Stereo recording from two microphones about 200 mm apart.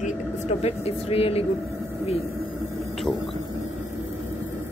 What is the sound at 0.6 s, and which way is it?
Speech, 30° left (ahead or behind).